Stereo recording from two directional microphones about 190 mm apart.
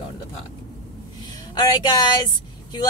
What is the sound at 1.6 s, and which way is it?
Speech, 25° left (ahead or behind).